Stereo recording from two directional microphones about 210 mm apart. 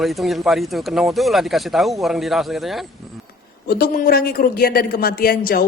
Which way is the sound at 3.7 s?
45° left (ahead or behind).